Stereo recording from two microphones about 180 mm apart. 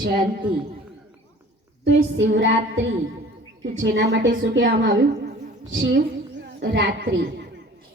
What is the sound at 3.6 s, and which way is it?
A woman's voice, 90° right.